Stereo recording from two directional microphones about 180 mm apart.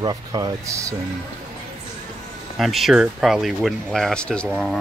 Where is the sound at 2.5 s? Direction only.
Centre (ahead or behind).